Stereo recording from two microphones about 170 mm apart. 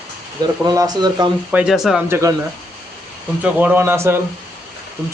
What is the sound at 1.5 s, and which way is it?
Speech, 5° right (ahead or behind).